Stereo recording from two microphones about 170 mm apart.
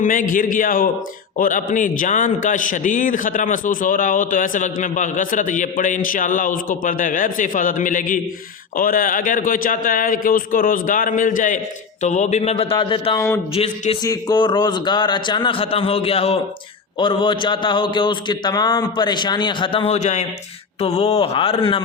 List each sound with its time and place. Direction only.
0.0 s a man's voice: 50° left (ahead or behind); by 13.1 s 30° left (ahead or behind)
13.1 s speech: 15° left (ahead or behind)
13.5 s speech: 35° left (ahead or behind)
14.0 s a man's voice: 20° left (ahead or behind)